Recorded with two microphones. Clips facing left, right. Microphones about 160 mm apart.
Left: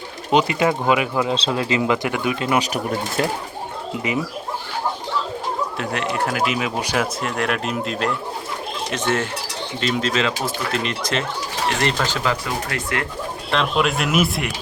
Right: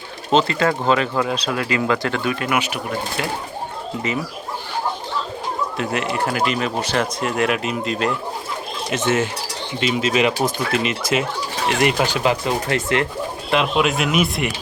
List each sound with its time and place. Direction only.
0.3 s speech: 15° left (ahead or behind)
2.6 s speech: 40° left (ahead or behind)
5.7 s speech: centre (ahead or behind); by 13.1 s 25° right (ahead or behind)
13.5 s speech: 5° right (ahead or behind)